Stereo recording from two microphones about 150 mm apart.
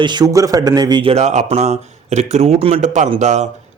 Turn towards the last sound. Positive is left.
turn(degrees=-50)  # may be behind; listen again after turning